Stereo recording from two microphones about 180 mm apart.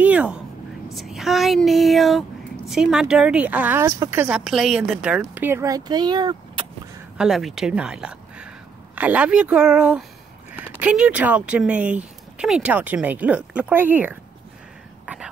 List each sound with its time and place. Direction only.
0.0 s vehicle: 5° right (ahead or behind)
0.9 s a woman's voice: centre (ahead or behind)
4.5 s speech: centre (ahead or behind); by 6.6 s 25° right (ahead or behind)
7.2 s a woman's voice: centre (ahead or behind)